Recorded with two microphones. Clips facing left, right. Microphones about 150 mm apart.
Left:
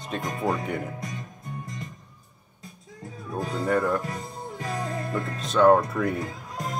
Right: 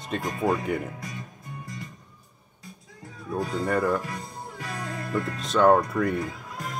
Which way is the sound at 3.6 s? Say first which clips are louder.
Left 1 dB; centre (ahead or behind).